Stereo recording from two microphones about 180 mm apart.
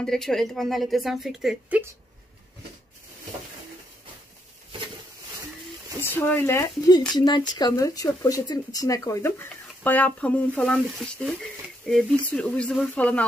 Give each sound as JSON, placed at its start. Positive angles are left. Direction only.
{"t": 0.0, "sound": "a woman's voice", "side_deg": 5}
{"t": 6.1, "sound": "a woman's voice", "side_deg": 10}